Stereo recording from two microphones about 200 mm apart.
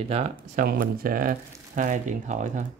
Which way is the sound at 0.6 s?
45° right (ahead or behind).